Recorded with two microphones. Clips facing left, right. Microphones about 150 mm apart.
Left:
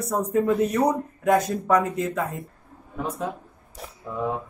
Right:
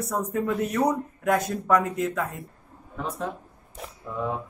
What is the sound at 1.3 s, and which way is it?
Speech, 15° left (ahead or behind).